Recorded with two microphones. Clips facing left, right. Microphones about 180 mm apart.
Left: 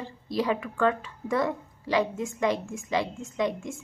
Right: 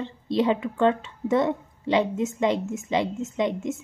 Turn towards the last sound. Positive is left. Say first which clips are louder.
# right 3 dB
turn(degrees=-20)  # may be behind; listen again after turning